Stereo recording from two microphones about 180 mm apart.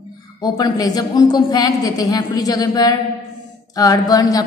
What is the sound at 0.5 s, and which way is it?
A woman's voice, 20° left (ahead or behind).